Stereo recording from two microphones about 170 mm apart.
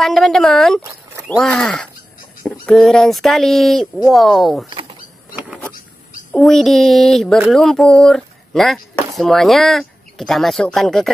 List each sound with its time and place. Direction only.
0.0 s speech: centre (ahead or behind)
4.6 s a sound: 30° right (ahead or behind)
6.3 s speech: centre (ahead or behind)